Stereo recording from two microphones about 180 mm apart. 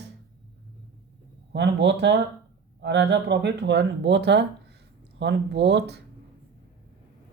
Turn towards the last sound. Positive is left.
turn(degrees=-70)  # may be behind; listen again after turning